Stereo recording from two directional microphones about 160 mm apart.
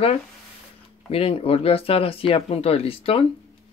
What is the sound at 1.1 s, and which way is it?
Speech, 35° left (ahead or behind).